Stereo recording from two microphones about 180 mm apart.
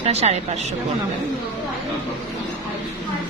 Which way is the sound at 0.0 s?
35° right (ahead or behind).